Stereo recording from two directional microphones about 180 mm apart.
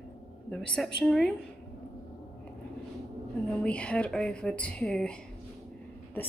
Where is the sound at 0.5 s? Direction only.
Centre (ahead or behind).